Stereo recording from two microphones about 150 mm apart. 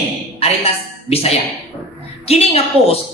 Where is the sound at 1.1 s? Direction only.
45° left (ahead or behind).